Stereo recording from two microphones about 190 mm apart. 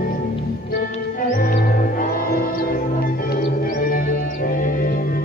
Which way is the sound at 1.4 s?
50° left (ahead or behind).